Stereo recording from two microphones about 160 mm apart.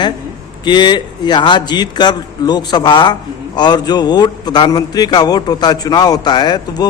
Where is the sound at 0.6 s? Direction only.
30° left (ahead or behind).